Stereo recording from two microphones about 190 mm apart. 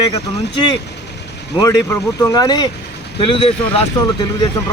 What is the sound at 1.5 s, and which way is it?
Speech, 20° left (ahead or behind).